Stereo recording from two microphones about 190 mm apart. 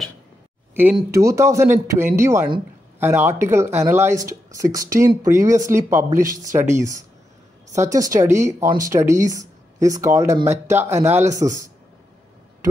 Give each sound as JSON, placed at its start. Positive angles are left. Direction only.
{"t": 0.9, "sound": "speech", "side_deg": -15}